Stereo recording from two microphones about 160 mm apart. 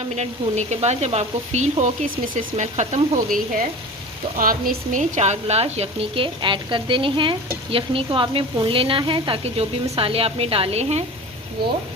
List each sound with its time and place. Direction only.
0.2 s speech: 45° right (ahead or behind)
3.3 s frying: 60° right (ahead or behind)
4.4 s a woman's voice: 60° right (ahead or behind); by 11.0 s 40° right (ahead or behind)